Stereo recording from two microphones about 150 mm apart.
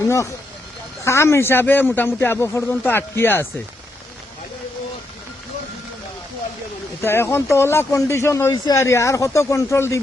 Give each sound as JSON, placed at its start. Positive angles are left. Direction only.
{"t": 1.0, "sound": "speech", "side_deg": 20}
{"t": 7.0, "sound": "speech", "side_deg": 15}